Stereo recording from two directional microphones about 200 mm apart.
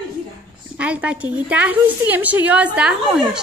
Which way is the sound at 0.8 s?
5° right (ahead or behind).